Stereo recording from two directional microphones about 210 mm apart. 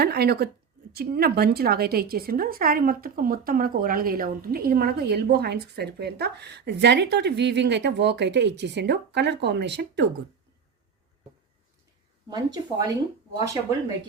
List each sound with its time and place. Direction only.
0.0 s a woman's voice: 50° right (ahead or behind)
12.3 s speech: 20° right (ahead or behind)